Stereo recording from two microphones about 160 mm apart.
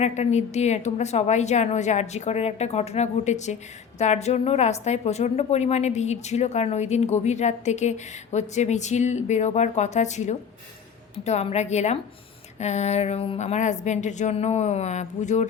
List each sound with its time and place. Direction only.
0.0 s a woman's voice: 45° left (ahead or behind)